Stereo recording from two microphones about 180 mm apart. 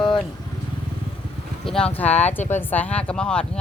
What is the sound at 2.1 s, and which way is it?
Speech, 40° left (ahead or behind).